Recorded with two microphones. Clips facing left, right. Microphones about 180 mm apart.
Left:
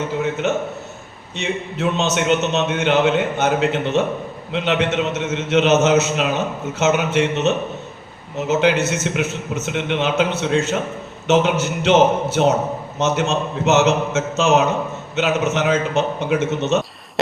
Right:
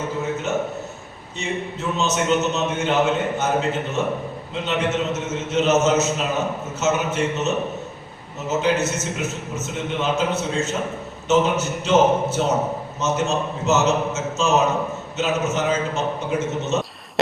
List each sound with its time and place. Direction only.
0.4 s a man's voice: 70° left (ahead or behind)